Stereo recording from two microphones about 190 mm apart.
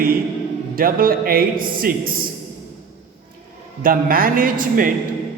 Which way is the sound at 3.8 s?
50° right (ahead or behind).